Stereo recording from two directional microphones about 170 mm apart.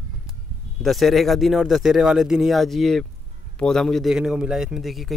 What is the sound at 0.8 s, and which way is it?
Speech, centre (ahead or behind).